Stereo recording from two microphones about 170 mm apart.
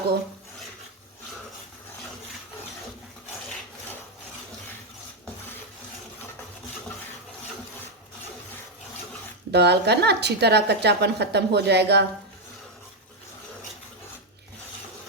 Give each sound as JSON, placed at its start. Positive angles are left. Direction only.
{"t": 9.5, "sound": "a woman's voice", "side_deg": -75}